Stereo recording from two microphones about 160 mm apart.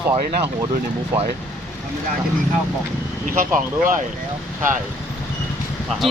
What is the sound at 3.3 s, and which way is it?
Speech, 60° right (ahead or behind).